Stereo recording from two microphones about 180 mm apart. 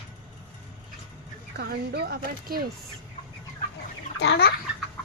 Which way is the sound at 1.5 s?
65° right (ahead or behind).